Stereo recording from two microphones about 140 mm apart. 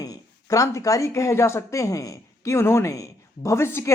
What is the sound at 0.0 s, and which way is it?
A woman's voice, 25° left (ahead or behind).